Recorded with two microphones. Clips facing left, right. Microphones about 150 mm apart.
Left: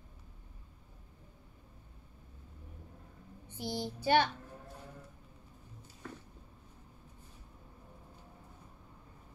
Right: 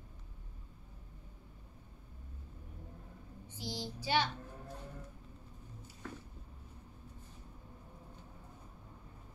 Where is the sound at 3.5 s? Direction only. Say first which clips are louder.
Left 5 dB; 55° left (ahead or behind).